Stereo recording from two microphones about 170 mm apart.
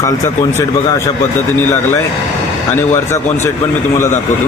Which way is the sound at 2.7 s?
15° left (ahead or behind).